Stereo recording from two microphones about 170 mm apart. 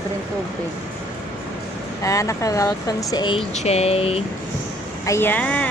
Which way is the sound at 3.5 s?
40° left (ahead or behind).